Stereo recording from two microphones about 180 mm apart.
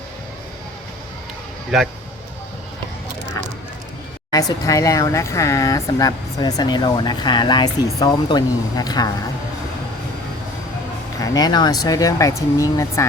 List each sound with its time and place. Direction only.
4.3 s speech: 20° left (ahead or behind)
11.2 s speech: 20° left (ahead or behind)